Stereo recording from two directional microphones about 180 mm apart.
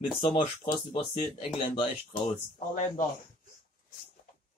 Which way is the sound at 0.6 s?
30° left (ahead or behind).